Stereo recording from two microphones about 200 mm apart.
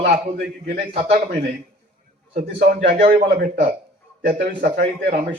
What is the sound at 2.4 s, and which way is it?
Speech, 50° right (ahead or behind).